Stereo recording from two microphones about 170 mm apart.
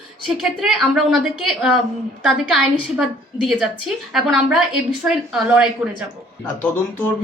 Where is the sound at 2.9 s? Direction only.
5° right (ahead or behind).